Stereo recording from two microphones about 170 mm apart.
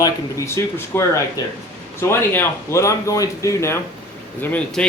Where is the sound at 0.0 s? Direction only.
15° left (ahead or behind).